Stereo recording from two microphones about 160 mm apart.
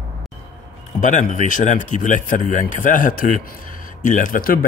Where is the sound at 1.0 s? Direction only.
50° left (ahead or behind).